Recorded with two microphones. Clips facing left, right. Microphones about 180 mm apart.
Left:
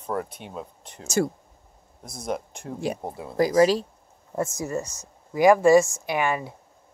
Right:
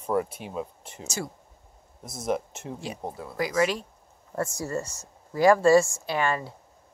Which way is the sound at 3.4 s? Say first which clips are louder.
Left 7 dB; 35° left (ahead or behind).